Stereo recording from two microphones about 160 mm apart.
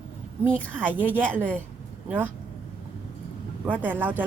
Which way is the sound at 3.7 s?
10° right (ahead or behind).